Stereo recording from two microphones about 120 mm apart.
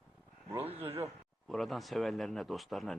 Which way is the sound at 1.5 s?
Centre (ahead or behind).